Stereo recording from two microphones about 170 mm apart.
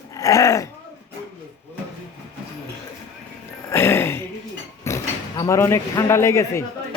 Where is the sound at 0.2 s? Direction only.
20° left (ahead or behind).